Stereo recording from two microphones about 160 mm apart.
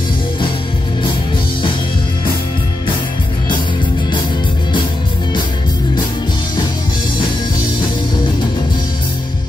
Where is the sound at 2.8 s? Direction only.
30° left (ahead or behind).